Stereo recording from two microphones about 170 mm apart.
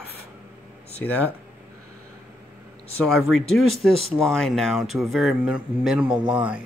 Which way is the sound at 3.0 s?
Centre (ahead or behind).